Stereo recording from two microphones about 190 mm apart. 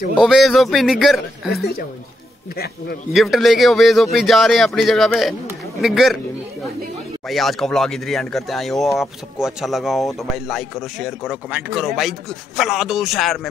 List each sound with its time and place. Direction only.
0.2 s speech: centre (ahead or behind)
2.5 s a man's voice: 55° left (ahead or behind)
3.1 s speech: centre (ahead or behind)
7.2 s speech: centre (ahead or behind)